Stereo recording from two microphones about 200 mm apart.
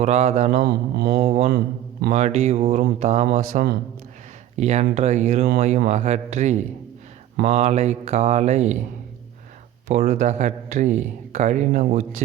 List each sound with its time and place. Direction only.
0.0 s speech: 35° right (ahead or behind)
0.6 s a sound: 50° right (ahead or behind)
1.2 s mantra: 30° right (ahead or behind)
1.5 s speech: 50° right (ahead or behind)
2.1 s speech: 35° right (ahead or behind)
10.0 s speech: 35° right (ahead or behind)